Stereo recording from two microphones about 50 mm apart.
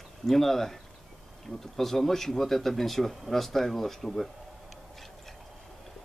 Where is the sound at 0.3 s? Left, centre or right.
Centre.